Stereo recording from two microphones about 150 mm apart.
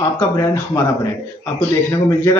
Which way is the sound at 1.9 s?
20° left (ahead or behind).